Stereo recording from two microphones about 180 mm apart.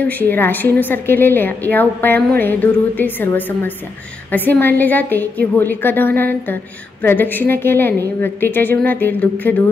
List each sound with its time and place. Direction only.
0.0 s a woman's voice: 10° left (ahead or behind)